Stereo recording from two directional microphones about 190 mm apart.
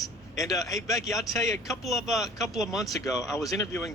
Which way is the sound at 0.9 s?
Centre (ahead or behind).